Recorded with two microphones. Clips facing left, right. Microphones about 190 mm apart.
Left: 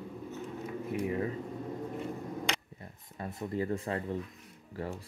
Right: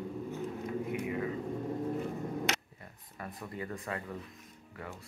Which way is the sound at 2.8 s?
25° left (ahead or behind).